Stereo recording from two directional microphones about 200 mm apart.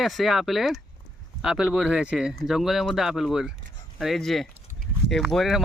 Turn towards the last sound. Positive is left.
turn(degrees=0)  # may be behind; listen again after turning